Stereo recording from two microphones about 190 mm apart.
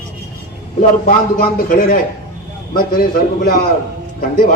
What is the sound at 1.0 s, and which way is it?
A man's voice, 45° left (ahead or behind).